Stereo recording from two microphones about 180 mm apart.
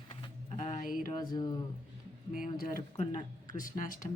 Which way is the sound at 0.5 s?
40° left (ahead or behind).